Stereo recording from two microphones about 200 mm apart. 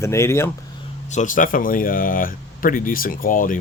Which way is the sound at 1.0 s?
40° left (ahead or behind).